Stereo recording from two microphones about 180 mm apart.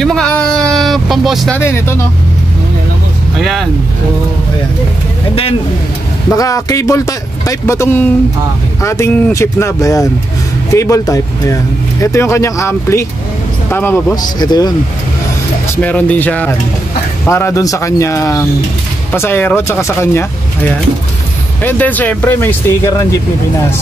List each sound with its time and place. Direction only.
0.0 s a sound: 5° left (ahead or behind)
1.6 s speech: 15° left (ahead or behind)
3.3 s speech: centre (ahead or behind)
6.3 s speech: 20° left (ahead or behind)
14.1 s speech: 20° left (ahead or behind)
15.7 s speech: 10° left (ahead or behind)